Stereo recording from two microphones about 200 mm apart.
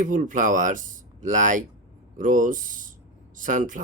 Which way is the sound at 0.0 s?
40° right (ahead or behind).